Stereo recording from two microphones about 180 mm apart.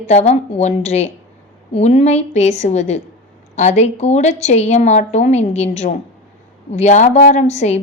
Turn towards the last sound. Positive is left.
turn(degrees=40)  # may be behind; listen again after turning